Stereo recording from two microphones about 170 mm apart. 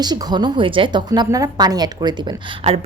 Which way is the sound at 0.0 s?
25° right (ahead or behind).